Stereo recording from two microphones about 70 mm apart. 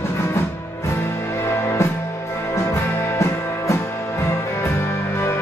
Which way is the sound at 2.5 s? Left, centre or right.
Left.